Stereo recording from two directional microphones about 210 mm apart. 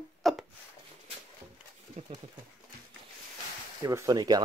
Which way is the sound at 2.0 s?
30° right (ahead or behind).